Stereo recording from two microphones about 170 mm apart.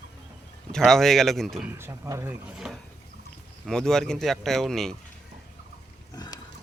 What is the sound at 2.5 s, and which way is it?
Speech, centre (ahead or behind).